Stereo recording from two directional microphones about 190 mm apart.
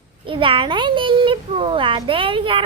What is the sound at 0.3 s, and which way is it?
A child's voice, 25° right (ahead or behind).